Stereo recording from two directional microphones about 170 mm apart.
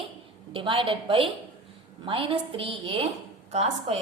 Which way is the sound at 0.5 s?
30° right (ahead or behind).